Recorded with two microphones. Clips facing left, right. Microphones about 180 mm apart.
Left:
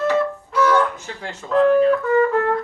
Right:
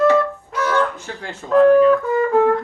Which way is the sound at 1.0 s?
45° right (ahead or behind).